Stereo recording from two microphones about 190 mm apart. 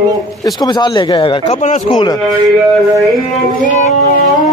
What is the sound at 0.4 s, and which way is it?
Speech, 20° left (ahead or behind).